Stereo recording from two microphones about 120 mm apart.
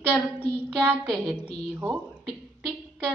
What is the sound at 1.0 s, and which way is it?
Speech, 5° left (ahead or behind).